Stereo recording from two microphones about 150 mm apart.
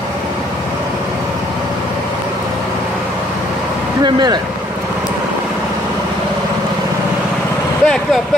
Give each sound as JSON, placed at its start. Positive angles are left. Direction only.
{"t": 4.0, "sound": "speech", "side_deg": -30}
{"t": 7.8, "sound": "vehicle", "side_deg": 5}